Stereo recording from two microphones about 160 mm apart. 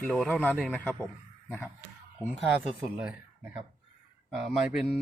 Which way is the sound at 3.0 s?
5° right (ahead or behind).